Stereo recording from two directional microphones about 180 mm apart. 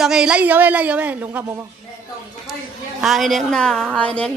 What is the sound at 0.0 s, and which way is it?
A woman's voice, 5° right (ahead or behind).